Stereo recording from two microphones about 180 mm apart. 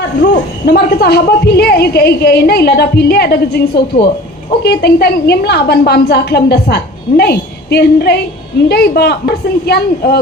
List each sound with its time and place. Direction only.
0.2 s a woman's voice: 65° left (ahead or behind)
4.6 s a woman's voice: 65° left (ahead or behind)